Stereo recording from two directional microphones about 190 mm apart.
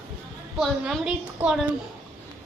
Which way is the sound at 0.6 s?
5° right (ahead or behind).